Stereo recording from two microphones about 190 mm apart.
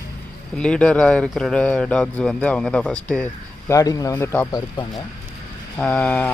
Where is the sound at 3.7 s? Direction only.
20° left (ahead or behind).